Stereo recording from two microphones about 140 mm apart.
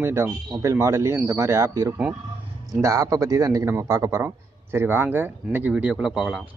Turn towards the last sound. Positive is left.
turn(degrees=-5)  # may be behind; listen again after turning